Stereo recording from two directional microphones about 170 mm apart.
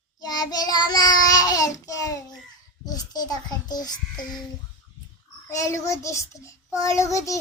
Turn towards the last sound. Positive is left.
turn(degrees=20)  # may be behind; listen again after turning